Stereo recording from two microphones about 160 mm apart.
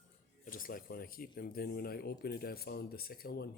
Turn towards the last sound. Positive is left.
turn(degrees=75)  # may be behind; listen again after turning